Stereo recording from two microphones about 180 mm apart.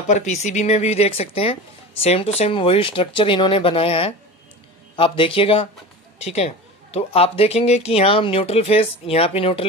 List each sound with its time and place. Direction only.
0.1 s a man's voice: 40° left (ahead or behind)